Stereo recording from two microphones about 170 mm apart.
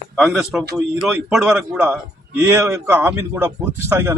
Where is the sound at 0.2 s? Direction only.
Centre (ahead or behind).